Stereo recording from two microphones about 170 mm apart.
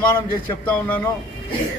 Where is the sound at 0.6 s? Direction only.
10° left (ahead or behind).